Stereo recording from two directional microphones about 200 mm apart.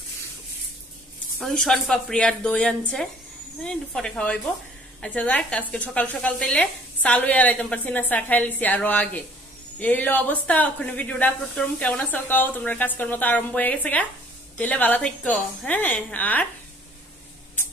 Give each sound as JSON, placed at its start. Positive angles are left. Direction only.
{"t": 1.4, "sound": "a woman's voice", "side_deg": 0}